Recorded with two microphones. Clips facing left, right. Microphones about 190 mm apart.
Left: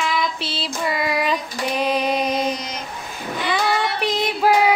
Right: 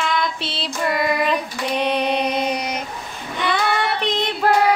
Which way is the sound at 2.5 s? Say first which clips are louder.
Right 5 dB; 60° right (ahead or behind).